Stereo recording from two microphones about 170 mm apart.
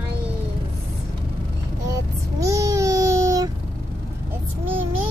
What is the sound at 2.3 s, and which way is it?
Babbling, 20° right (ahead or behind).